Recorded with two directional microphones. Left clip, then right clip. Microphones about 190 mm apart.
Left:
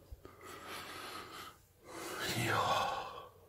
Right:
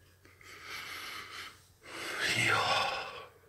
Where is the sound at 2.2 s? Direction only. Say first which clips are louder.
Right 6 dB; 15° left (ahead or behind).